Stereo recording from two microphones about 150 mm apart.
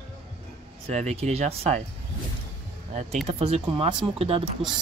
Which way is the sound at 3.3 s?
45° right (ahead or behind).